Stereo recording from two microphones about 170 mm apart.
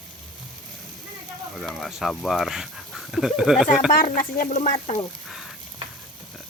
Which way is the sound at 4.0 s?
55° left (ahead or behind).